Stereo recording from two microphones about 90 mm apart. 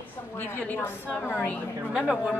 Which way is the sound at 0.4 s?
20° left (ahead or behind).